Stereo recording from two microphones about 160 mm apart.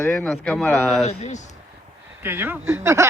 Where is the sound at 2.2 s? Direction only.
15° right (ahead or behind).